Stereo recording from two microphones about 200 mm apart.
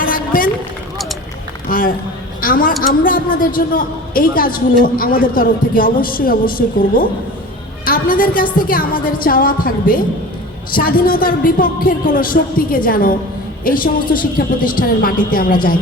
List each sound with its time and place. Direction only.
0.0 s a sound: 45° left (ahead or behind)
1.6 s a man's voice: 45° left (ahead or behind)
7.9 s a woman's voice: 45° left (ahead or behind)